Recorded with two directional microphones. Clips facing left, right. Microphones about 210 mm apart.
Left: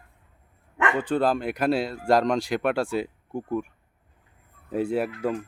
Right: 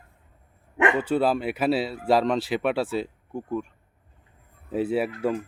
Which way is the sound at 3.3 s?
10° left (ahead or behind).